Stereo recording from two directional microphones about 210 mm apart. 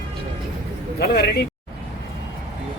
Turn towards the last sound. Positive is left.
turn(degrees=50)  # may be behind; listen again after turning